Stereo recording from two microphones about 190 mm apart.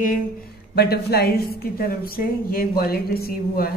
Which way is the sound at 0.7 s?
55° left (ahead or behind).